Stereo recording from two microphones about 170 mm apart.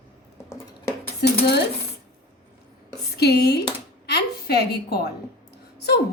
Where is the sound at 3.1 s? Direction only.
75° left (ahead or behind).